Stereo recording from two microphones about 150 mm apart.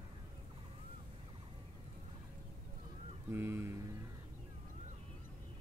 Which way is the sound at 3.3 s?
15° right (ahead or behind).